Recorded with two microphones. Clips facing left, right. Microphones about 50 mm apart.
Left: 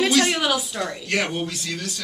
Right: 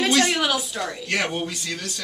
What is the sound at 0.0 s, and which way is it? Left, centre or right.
A woman's voice, centre.